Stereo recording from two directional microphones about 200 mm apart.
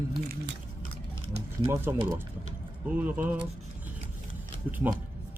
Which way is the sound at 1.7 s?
10° right (ahead or behind).